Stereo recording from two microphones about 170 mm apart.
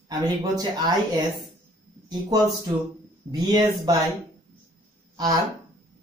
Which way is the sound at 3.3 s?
20° right (ahead or behind).